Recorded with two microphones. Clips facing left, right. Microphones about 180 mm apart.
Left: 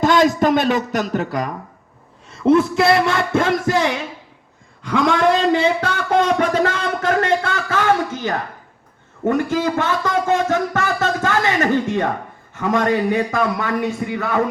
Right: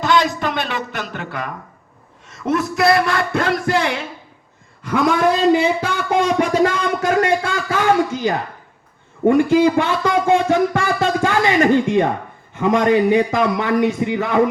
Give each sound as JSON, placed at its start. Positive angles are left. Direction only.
{"t": 0.0, "sound": "a man's voice", "side_deg": 45}
{"t": 4.9, "sound": "a man's voice", "side_deg": -5}